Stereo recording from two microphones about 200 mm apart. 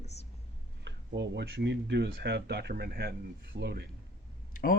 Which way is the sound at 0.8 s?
60° right (ahead or behind).